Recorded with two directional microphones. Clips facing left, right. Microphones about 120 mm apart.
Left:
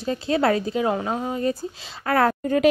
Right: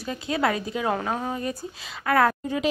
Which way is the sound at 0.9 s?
20° left (ahead or behind).